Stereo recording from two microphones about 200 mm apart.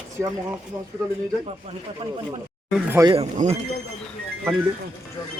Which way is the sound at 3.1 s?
30° right (ahead or behind).